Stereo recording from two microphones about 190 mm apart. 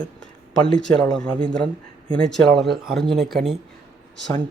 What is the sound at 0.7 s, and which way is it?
Speech, 5° left (ahead or behind).